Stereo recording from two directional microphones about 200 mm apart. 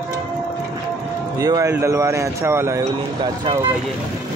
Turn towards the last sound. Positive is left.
turn(degrees=-15)  # may be behind; listen again after turning